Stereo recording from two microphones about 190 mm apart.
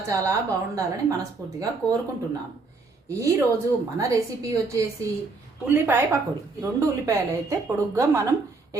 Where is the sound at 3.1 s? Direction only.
15° right (ahead or behind).